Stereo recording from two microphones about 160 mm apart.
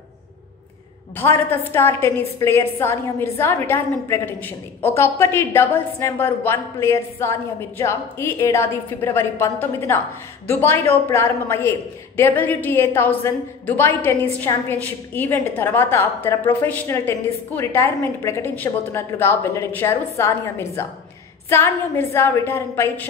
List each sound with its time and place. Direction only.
1.1 s a woman's voice: 15° left (ahead or behind)